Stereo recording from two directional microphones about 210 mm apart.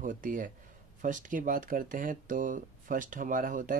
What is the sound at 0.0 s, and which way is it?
Speech, 40° right (ahead or behind).